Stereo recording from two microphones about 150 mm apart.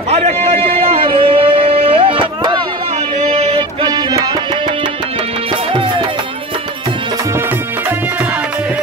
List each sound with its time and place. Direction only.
0.1 s a sound: 40° right (ahead or behind)
3.2 s music: 40° right (ahead or behind)
5.7 s music: 35° right (ahead or behind)